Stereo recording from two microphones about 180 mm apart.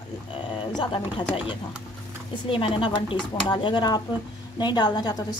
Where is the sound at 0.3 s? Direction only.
25° left (ahead or behind).